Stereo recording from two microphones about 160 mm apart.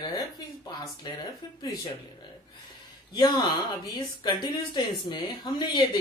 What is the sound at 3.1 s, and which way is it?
Speech, 25° left (ahead or behind).